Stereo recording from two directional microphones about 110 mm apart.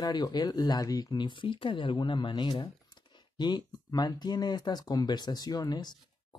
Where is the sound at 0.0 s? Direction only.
40° left (ahead or behind).